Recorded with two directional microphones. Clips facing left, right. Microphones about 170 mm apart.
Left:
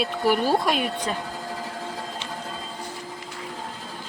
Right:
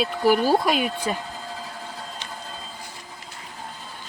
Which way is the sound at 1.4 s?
75° left (ahead or behind).